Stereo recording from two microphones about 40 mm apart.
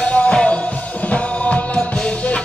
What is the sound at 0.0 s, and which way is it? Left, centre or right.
Music, left.